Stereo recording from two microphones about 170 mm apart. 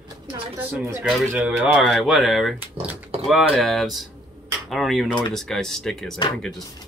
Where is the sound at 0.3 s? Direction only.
35° right (ahead or behind).